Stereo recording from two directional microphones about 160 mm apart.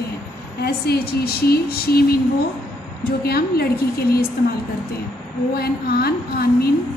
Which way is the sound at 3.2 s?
75° left (ahead or behind).